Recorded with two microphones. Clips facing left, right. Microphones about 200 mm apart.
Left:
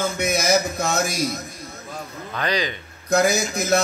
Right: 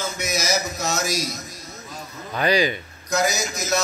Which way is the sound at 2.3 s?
10° right (ahead or behind).